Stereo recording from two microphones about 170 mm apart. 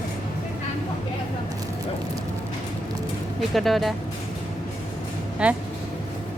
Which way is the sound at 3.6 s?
Centre (ahead or behind).